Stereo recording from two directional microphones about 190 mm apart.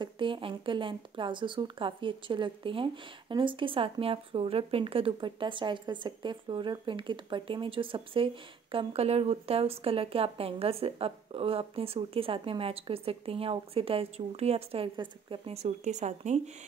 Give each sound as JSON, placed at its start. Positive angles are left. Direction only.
{"t": 0.0, "sound": "a woman's voice", "side_deg": -25}